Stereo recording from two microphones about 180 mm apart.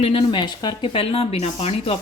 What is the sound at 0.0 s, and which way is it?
Speech, 30° left (ahead or behind).